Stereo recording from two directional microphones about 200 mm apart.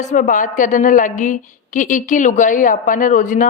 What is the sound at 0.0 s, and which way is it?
A woman's voice, 35° left (ahead or behind).